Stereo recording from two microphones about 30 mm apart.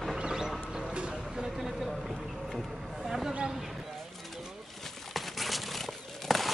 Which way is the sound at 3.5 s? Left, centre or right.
Centre.